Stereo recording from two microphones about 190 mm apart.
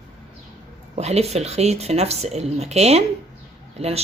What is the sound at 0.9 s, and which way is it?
A woman's voice, 35° right (ahead or behind).